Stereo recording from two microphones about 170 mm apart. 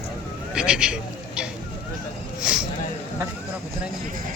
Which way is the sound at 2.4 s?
5° right (ahead or behind).